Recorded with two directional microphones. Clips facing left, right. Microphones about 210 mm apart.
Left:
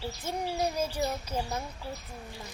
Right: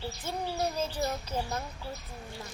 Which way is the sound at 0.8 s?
10° left (ahead or behind).